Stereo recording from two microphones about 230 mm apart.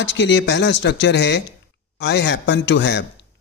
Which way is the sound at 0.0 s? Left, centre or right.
Left.